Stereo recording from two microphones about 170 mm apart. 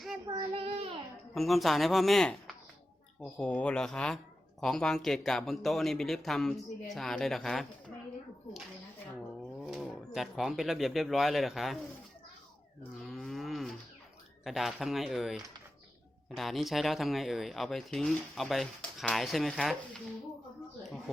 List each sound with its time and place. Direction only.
0.3 s child singing: 30° right (ahead or behind)
1.3 s speech: centre (ahead or behind)
9.6 s speech: centre (ahead or behind)
13.0 s moo: centre (ahead or behind)
14.4 s speech: centre (ahead or behind)